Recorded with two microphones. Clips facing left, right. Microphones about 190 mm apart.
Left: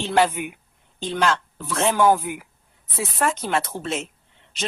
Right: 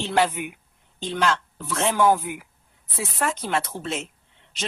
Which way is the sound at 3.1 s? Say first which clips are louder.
Left 2 dB; 45° left (ahead or behind).